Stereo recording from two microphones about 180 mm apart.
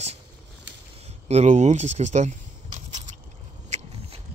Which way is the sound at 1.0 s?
35° right (ahead or behind).